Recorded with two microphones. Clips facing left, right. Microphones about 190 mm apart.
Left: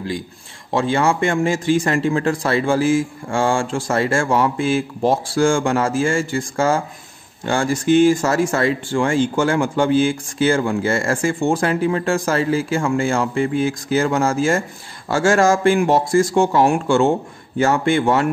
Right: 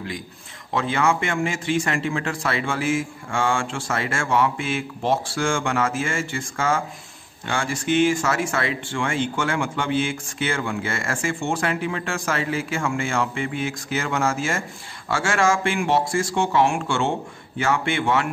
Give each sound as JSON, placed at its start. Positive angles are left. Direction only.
{"t": 0.7, "sound": "speech", "side_deg": 30}